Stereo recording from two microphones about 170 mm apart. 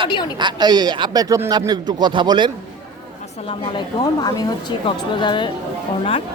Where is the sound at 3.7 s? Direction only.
25° left (ahead or behind).